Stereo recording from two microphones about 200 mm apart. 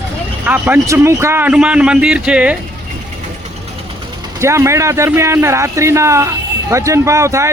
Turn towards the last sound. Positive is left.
turn(degrees=-15)  # may be behind; listen again after turning